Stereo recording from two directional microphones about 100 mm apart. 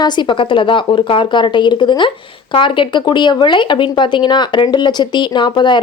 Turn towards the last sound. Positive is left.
turn(degrees=50)  # may be behind; listen again after turning